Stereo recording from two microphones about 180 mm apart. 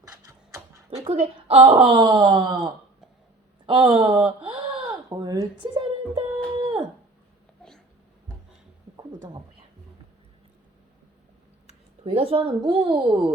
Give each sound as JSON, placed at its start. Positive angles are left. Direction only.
{"t": 1.0, "sound": "speech", "side_deg": -30}
{"t": 3.7, "sound": "speech", "side_deg": -30}
{"t": 4.9, "sound": "a sound", "side_deg": -25}
{"t": 11.6, "sound": "speech", "side_deg": -35}